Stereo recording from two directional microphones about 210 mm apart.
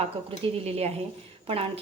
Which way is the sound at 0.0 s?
30° right (ahead or behind).